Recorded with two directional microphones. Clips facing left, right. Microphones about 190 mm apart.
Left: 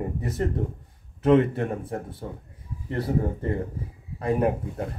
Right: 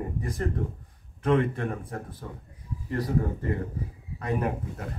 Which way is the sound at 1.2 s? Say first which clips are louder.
Left 5 dB; 30° left (ahead or behind).